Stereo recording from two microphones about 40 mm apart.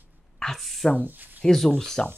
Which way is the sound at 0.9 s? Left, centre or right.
Right.